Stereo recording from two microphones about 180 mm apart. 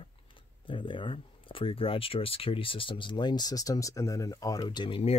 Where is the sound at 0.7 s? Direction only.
25° left (ahead or behind).